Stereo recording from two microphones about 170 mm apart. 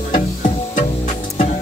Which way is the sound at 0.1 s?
50° left (ahead or behind).